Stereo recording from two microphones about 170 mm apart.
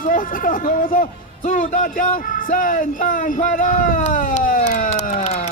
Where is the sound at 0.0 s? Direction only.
50° left (ahead or behind).